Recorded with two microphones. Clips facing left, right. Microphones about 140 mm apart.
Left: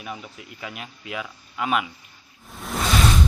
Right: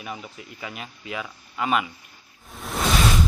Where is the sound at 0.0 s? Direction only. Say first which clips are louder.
Even; centre (ahead or behind).